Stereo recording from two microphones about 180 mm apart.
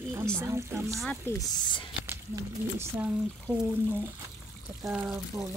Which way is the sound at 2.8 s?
10° right (ahead or behind).